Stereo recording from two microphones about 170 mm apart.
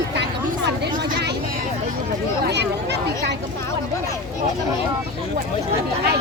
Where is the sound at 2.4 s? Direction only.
80° right.